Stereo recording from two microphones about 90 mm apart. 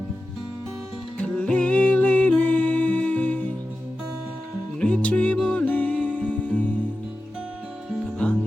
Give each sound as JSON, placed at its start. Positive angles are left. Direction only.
{"t": 1.3, "sound": "music", "side_deg": 10}
{"t": 4.8, "sound": "music", "side_deg": 15}
{"t": 8.2, "sound": "music", "side_deg": 15}